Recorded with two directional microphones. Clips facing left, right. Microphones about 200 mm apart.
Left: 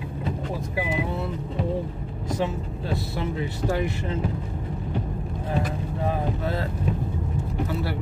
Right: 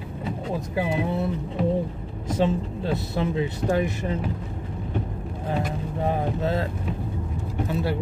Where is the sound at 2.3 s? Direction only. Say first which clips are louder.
Right 4 dB; 20° right (ahead or behind).